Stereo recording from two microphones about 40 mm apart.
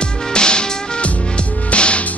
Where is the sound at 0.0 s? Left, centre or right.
Left.